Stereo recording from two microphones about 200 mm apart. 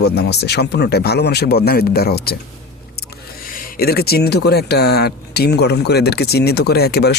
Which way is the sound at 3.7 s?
50° left (ahead or behind).